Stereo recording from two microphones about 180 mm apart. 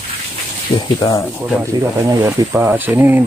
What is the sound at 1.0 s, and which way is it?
Speech, 20° left (ahead or behind).